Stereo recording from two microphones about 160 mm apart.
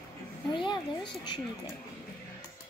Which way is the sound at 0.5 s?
30° left (ahead or behind).